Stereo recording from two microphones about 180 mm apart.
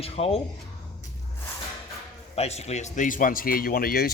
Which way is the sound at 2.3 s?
35° left (ahead or behind).